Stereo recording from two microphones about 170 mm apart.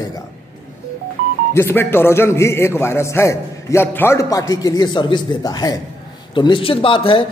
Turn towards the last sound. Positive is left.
turn(degrees=30)  # may be behind; listen again after turning